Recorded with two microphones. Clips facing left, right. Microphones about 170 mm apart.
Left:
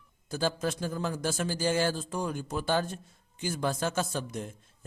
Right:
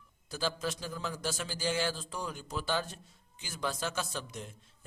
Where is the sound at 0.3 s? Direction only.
50° left (ahead or behind).